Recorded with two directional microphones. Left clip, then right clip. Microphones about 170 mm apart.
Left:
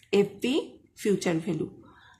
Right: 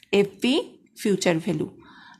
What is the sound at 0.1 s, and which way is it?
A woman's voice, 25° right (ahead or behind).